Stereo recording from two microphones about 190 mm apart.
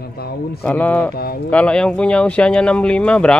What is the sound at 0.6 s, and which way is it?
Speech, 10° left (ahead or behind).